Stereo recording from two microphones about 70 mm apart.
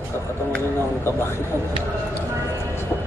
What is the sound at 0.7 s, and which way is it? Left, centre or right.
Speech, left.